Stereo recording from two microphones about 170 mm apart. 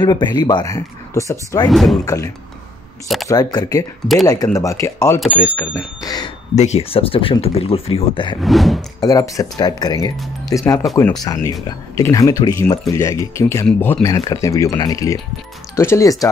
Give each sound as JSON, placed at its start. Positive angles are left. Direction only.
{"t": 0.0, "sound": "speech", "side_deg": 25}
{"t": 1.7, "sound": "speech", "side_deg": 0}
{"t": 2.0, "sound": "speech", "side_deg": 20}
{"t": 5.7, "sound": "speech", "side_deg": 20}
{"t": 6.5, "sound": "speech", "side_deg": 40}
{"t": 8.4, "sound": "speech", "side_deg": 0}
{"t": 9.0, "sound": "speech", "side_deg": 20}